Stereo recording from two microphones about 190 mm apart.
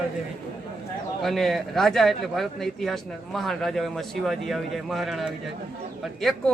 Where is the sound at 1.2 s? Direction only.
Centre (ahead or behind).